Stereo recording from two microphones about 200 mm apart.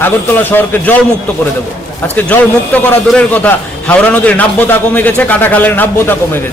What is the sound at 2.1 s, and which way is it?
A man's voice, 10° left (ahead or behind).